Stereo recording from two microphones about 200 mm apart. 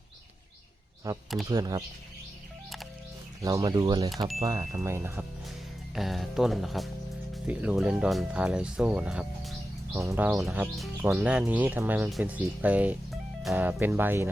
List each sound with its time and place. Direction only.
1.1 s speech: 15° right (ahead or behind)
3.4 s speech: 15° right (ahead or behind)
5.9 s speech: centre (ahead or behind)
9.9 s speech: 15° right (ahead or behind)